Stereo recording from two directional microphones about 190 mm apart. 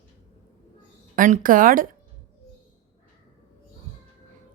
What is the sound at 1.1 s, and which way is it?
Speech, 45° right (ahead or behind).